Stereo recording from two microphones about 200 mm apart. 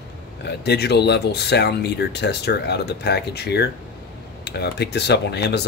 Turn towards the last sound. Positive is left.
turn(degrees=55)  # may be behind; listen again after turning